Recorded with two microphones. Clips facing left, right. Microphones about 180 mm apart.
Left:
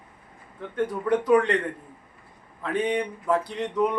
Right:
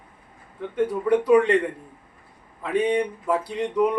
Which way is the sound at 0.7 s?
10° right (ahead or behind).